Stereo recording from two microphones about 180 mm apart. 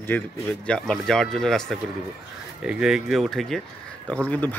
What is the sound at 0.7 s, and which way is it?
Speech, 5° left (ahead or behind).